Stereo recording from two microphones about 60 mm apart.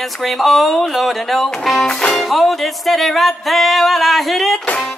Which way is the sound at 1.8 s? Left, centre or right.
Centre.